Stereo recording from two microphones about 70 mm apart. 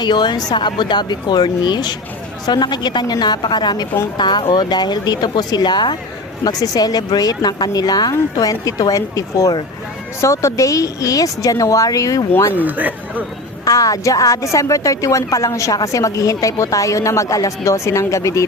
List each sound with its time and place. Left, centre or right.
0.0 s speech: left
6.4 s speech: left
10.2 s a woman's voice: left
12.5 s speech: right
13.7 s a woman's voice: left